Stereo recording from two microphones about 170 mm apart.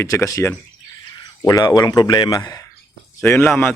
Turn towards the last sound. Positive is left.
turn(degrees=15)  # may be behind; listen again after turning